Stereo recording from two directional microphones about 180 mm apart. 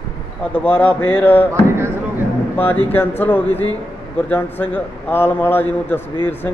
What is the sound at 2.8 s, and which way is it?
Speech, 10° left (ahead or behind).